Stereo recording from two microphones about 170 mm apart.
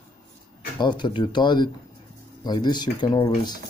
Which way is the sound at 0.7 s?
25° left (ahead or behind).